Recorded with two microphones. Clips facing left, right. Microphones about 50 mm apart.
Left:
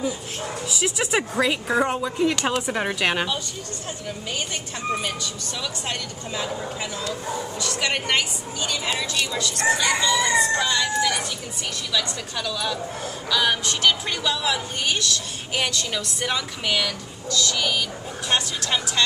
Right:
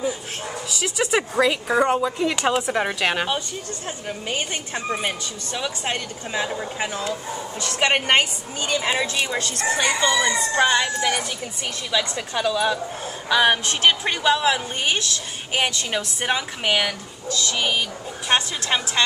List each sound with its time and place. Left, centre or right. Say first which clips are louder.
0.7 s speech: right 2 dB; centre
4.3 s a woman's voice: right 4 dB; right